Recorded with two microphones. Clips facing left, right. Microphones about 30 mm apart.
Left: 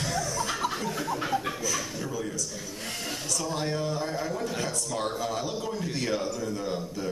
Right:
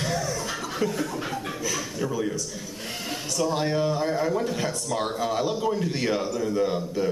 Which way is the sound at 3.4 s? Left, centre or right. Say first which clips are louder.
Right 7 dB; centre.